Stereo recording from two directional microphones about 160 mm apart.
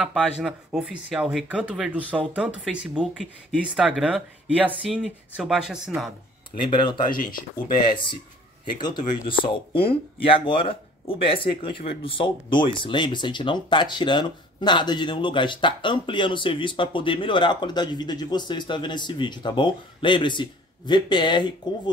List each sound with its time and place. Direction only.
0.0 s speech: centre (ahead or behind)
6.7 s speech: 30° left (ahead or behind)
7.3 s speech: 60° left (ahead or behind)
8.7 s speech: 30° left (ahead or behind)